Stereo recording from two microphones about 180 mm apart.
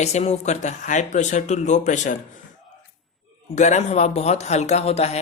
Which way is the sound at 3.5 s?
40° left (ahead or behind).